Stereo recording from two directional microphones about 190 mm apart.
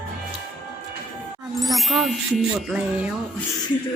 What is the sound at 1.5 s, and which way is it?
Ding, centre (ahead or behind).